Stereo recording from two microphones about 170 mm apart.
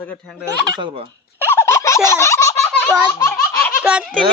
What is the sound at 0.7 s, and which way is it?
Speech, 30° right (ahead or behind).